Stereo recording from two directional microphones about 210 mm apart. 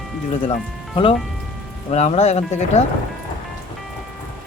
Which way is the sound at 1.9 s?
30° left (ahead or behind).